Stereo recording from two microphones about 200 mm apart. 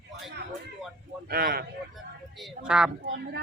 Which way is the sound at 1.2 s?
50° right (ahead or behind).